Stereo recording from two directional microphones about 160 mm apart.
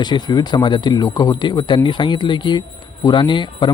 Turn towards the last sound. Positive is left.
turn(degrees=30)  # may be behind; listen again after turning